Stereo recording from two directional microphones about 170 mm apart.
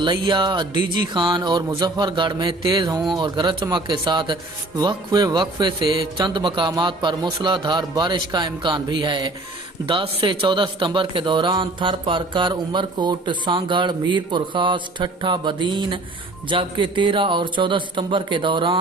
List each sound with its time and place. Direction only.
0.0 s a man's voice: 30° right (ahead or behind)